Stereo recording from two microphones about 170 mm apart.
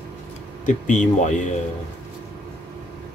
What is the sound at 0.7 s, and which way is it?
Speech, 45° left (ahead or behind).